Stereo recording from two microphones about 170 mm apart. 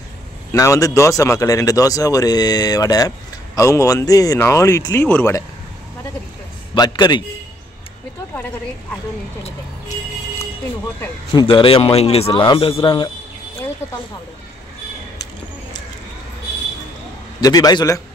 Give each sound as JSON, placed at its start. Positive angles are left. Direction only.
{"t": 0.5, "sound": "speech", "side_deg": 20}
{"t": 6.7, "sound": "speech", "side_deg": 25}
{"t": 11.4, "sound": "a man's voice", "side_deg": 30}
{"t": 17.4, "sound": "speech", "side_deg": 20}